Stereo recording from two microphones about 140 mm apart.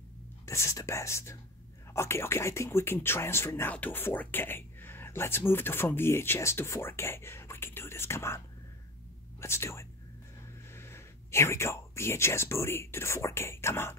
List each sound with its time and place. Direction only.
0.5 s speech: 20° left (ahead or behind)
9.4 s speech: 20° left (ahead or behind)